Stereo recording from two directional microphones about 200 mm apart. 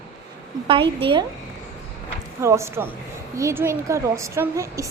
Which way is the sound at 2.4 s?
15° right (ahead or behind).